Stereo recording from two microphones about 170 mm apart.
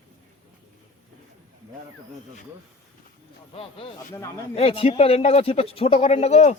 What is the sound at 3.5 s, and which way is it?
Speech, 35° left (ahead or behind).